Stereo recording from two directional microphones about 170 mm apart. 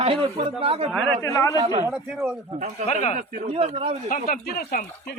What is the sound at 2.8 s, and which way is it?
Speech, 40° left (ahead or behind).